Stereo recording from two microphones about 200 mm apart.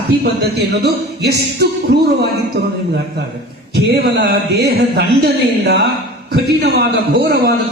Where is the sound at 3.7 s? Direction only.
55° right (ahead or behind).